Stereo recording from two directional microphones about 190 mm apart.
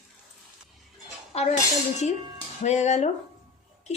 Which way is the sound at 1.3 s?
35° left (ahead or behind).